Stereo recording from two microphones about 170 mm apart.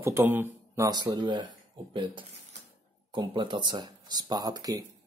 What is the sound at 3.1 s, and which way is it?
Speech, 30° right (ahead or behind).